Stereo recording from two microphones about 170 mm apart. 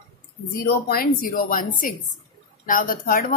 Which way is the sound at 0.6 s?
60° left (ahead or behind).